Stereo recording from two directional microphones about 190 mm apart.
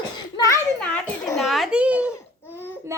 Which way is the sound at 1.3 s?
Centre (ahead or behind).